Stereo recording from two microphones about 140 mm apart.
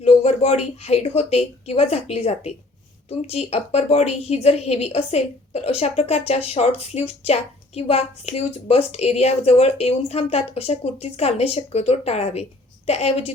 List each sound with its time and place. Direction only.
0.0 s a woman's voice: 50° left (ahead or behind)